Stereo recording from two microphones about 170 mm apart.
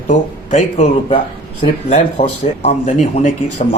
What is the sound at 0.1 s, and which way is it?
Speech, 45° left (ahead or behind).